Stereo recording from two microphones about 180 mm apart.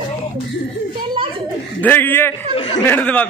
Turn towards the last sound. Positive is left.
turn(degrees=10)  # may be behind; listen again after turning